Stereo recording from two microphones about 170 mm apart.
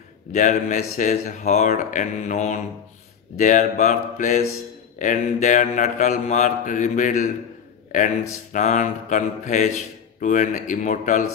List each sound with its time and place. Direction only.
0.3 s speech: 45° left (ahead or behind)
8.5 s speech: 45° left (ahead or behind)